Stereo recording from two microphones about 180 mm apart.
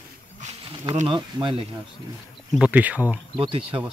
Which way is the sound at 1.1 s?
25° right (ahead or behind).